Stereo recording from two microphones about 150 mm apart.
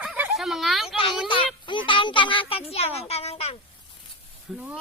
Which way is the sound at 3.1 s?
45° left (ahead or behind).